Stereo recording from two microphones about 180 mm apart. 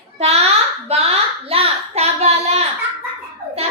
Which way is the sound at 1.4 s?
35° right (ahead or behind).